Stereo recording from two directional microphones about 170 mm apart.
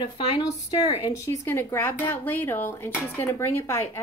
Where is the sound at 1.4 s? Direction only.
15° left (ahead or behind).